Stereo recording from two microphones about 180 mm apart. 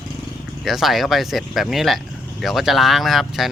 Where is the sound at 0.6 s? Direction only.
Centre (ahead or behind).